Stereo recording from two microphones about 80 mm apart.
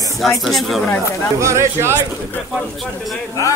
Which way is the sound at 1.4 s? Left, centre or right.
Right.